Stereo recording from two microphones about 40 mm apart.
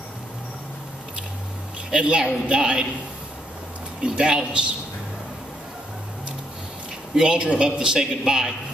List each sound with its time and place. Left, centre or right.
1.9 s a man's voice: right
4.0 s a man's voice: right
7.2 s a man's voice: right